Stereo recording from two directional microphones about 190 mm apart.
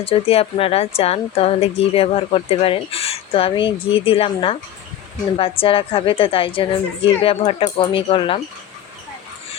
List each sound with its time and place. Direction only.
0.0 s a woman's voice: 30° left (ahead or behind)